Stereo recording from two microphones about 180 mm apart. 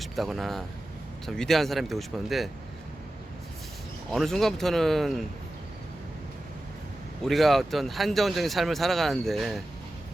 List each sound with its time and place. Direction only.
0.0 s speech: centre (ahead or behind)
4.1 s speech: centre (ahead or behind)
7.3 s speech: centre (ahead or behind)